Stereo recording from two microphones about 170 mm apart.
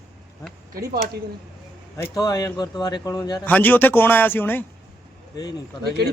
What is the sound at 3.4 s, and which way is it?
A man's voice, 10° left (ahead or behind).